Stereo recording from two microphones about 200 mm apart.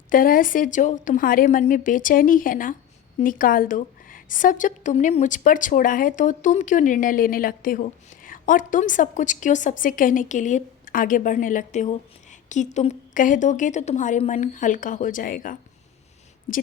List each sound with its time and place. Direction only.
0.1 s a woman's voice: 45° left (ahead or behind)